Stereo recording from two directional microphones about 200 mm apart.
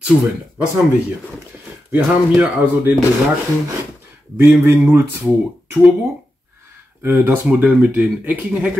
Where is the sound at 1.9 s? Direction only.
10° right (ahead or behind).